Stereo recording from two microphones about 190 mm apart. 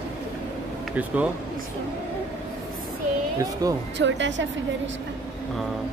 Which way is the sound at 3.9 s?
70° right (ahead or behind).